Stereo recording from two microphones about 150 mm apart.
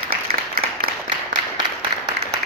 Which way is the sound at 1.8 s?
25° right (ahead or behind).